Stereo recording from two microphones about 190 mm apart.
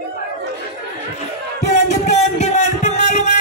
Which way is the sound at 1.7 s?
40° left (ahead or behind).